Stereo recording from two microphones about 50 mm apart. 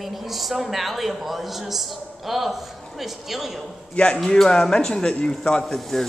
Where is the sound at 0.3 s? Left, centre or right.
Centre.